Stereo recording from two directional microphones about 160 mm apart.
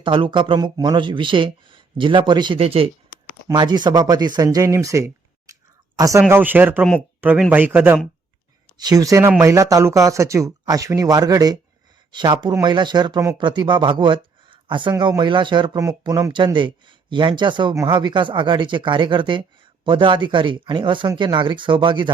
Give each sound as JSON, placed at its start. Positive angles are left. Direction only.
{"t": 0.0, "sound": "speech", "side_deg": -30}
{"t": 8.8, "sound": "speech", "side_deg": -20}